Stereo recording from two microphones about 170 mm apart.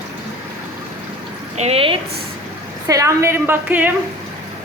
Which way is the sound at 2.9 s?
20° right (ahead or behind).